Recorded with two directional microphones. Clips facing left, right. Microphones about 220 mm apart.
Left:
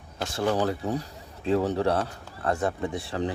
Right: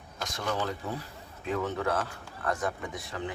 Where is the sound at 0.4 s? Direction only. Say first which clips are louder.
Left 7 dB; 45° left (ahead or behind).